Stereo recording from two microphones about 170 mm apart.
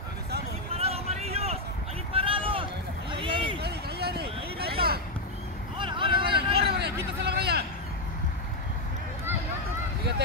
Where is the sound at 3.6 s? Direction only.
70° right (ahead or behind).